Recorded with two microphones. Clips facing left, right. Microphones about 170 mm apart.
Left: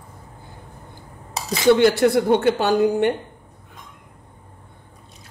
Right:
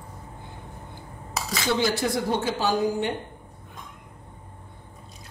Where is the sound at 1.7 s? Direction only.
65° left (ahead or behind).